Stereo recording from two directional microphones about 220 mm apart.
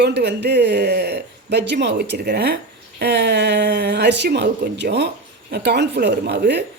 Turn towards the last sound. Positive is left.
turn(degrees=-50)  # may be behind; listen again after turning